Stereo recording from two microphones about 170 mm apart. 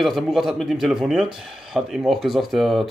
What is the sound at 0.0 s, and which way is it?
Speech, centre (ahead or behind).